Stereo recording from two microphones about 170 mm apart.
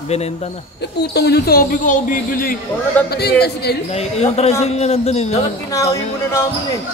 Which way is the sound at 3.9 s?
40° left (ahead or behind).